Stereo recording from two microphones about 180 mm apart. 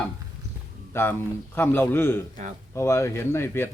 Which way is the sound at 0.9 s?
15° left (ahead or behind).